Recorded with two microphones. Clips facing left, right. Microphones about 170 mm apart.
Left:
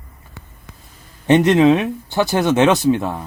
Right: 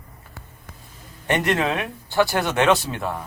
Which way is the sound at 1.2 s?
20° left (ahead or behind).